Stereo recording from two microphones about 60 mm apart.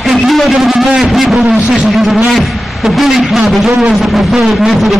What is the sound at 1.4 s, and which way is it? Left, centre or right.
Speech, centre.